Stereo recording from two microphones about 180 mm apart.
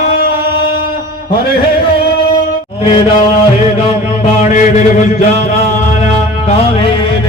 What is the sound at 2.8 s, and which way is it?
Chant, 30° left (ahead or behind).